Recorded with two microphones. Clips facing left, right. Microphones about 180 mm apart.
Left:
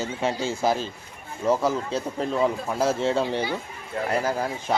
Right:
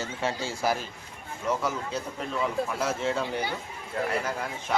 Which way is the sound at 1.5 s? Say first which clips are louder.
Left 6 dB; 35° left (ahead or behind).